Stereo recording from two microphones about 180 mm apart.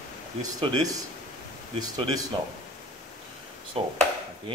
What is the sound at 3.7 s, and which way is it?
Speech, 30° right (ahead or behind).